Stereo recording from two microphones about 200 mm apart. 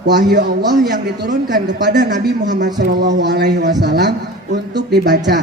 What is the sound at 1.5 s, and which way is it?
A woman's voice, 55° right (ahead or behind).